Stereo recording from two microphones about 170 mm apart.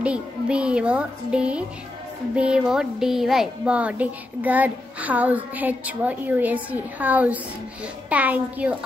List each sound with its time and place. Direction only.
0.0 s a child's voice: 5° right (ahead or behind)